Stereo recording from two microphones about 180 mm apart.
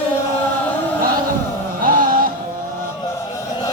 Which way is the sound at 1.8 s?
50° right (ahead or behind).